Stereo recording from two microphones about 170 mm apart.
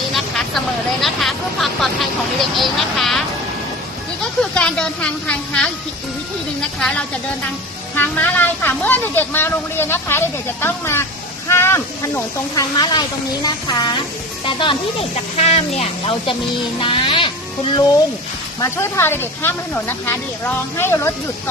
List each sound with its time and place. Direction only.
1.0 s speech: centre (ahead or behind)
4.5 s speech: 5° left (ahead or behind); by 14.8 s 30° left (ahead or behind)
15.4 s speech: 40° left (ahead or behind)
18.6 s speech: 15° left (ahead or behind)